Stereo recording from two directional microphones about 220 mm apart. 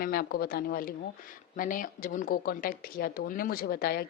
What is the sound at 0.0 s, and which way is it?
Speech, 40° left (ahead or behind).